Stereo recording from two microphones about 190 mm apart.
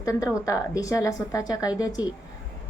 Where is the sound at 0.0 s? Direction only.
15° left (ahead or behind).